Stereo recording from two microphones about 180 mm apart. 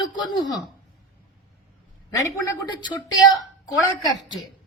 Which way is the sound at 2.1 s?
20° left (ahead or behind).